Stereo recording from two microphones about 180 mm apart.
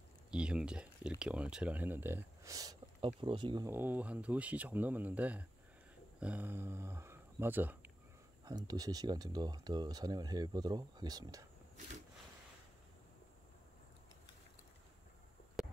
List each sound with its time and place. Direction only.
0.3 s speech: 5° right (ahead or behind); by 3.7 s 25° right (ahead or behind)
3.7 s speech: 10° right (ahead or behind)
8.5 s speech: 20° right (ahead or behind)